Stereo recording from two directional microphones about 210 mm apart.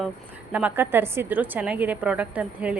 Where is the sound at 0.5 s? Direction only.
10° right (ahead or behind).